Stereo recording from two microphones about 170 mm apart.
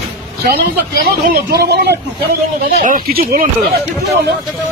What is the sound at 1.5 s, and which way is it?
Speech, 75° right (ahead or behind).